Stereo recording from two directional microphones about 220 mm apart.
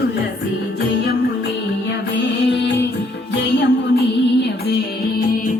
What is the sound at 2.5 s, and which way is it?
Music, 50° left (ahead or behind).